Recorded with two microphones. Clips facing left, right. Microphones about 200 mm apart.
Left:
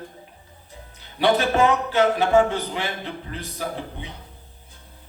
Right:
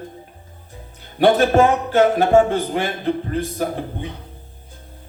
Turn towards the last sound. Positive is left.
turn(degrees=-50)  # may be behind; listen again after turning